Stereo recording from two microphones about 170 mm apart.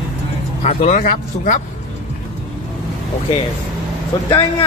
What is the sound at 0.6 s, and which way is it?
Speech, 40° left (ahead or behind).